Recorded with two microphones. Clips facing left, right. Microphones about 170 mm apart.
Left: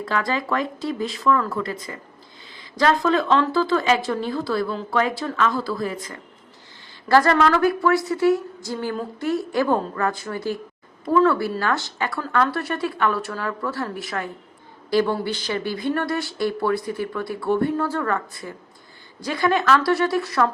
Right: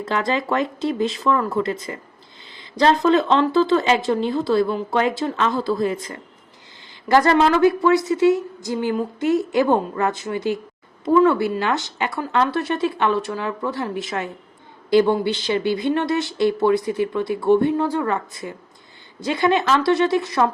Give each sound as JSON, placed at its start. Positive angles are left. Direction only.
{"t": 0.0, "sound": "speech", "side_deg": -20}